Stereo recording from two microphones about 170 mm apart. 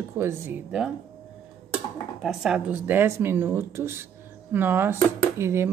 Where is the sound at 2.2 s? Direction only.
Centre (ahead or behind).